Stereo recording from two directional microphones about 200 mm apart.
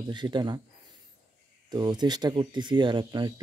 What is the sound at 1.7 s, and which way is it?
Speech, 20° right (ahead or behind).